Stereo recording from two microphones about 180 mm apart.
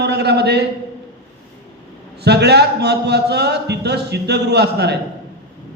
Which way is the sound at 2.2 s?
65° right (ahead or behind).